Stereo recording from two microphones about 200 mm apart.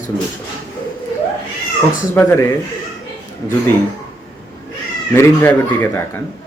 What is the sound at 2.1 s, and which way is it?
Speech, 10° left (ahead or behind).